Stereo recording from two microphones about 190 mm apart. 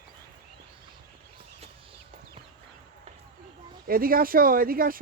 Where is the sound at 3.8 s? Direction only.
50° right (ahead or behind).